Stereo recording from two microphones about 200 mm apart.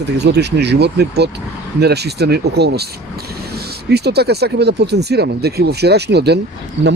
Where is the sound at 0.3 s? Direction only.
55° right (ahead or behind).